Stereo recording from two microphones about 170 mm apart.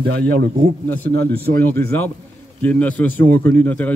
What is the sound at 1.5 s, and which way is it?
A man's voice, 10° left (ahead or behind).